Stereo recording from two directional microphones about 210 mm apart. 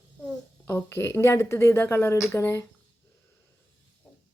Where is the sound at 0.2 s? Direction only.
10° left (ahead or behind).